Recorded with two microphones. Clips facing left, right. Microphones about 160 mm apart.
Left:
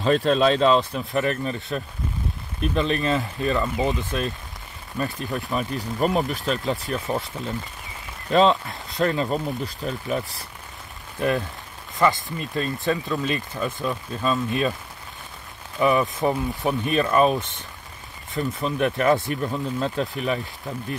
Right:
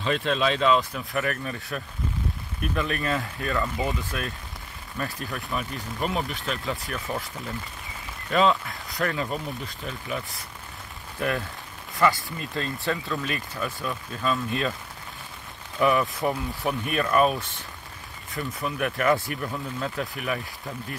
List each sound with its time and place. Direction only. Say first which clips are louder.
0.0 s speech: left 6 dB; 40° left (ahead or behind); by 5.6 s 20° left (ahead or behind)
5.6 s speech: left 8 dB; 40° left (ahead or behind)
6.9 s speech: left 6 dB; 25° left (ahead or behind)
8.3 s speech: left 4 dB; 35° left (ahead or behind)
8.7 s speech: left 5 dB; 25° left (ahead or behind)
9.8 s speech: left 6 dB; 40° left (ahead or behind)
11.1 s speech: left 4 dB; 20° left (ahead or behind)
15.8 s speech: left 2 dB; 20° left (ahead or behind)